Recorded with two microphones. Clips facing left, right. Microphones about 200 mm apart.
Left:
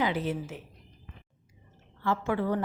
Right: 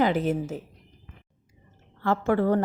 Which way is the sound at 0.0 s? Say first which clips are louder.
Right 6 dB; 45° right (ahead or behind).